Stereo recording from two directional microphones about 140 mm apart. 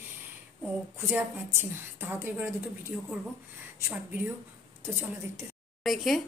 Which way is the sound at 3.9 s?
10° right (ahead or behind).